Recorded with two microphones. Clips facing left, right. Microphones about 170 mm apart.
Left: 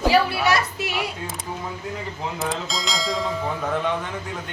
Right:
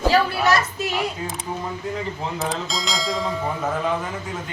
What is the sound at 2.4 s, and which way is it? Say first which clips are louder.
Speech: even; centre (ahead or behind).